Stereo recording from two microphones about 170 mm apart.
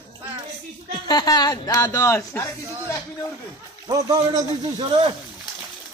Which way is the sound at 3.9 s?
20° right (ahead or behind).